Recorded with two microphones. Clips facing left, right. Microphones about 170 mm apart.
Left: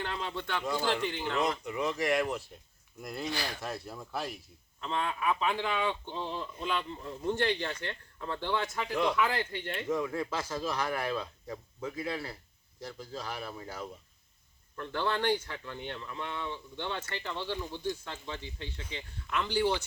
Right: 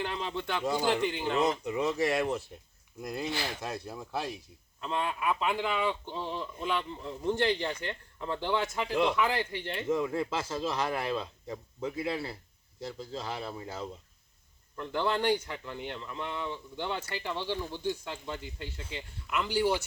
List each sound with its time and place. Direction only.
0.0 s a man's voice: 15° right (ahead or behind)
8.9 s speech: 25° right (ahead or behind)
9.1 s speech: 15° right (ahead or behind)
14.8 s speech: 15° right (ahead or behind)